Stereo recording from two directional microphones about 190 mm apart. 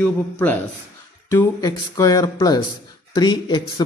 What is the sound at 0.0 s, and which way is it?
A man's voice, 10° left (ahead or behind).